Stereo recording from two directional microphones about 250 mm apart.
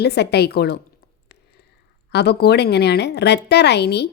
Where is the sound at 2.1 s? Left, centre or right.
Left.